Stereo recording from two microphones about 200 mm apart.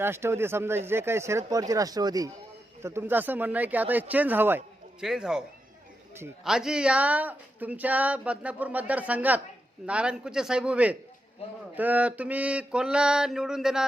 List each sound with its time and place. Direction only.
0.0 s a woman's voice: 10° right (ahead or behind)
9.8 s mantra: 5° right (ahead or behind)